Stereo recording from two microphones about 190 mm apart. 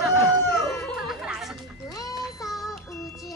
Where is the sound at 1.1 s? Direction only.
Centre (ahead or behind).